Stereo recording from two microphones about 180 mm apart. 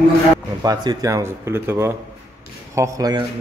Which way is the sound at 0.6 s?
20° right (ahead or behind).